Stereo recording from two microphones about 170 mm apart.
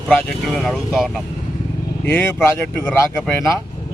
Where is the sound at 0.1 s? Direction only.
5° left (ahead or behind).